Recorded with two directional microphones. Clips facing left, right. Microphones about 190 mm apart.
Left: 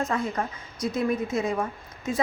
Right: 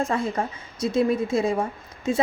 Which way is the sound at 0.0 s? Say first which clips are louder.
Right 3 dB; 30° right (ahead or behind).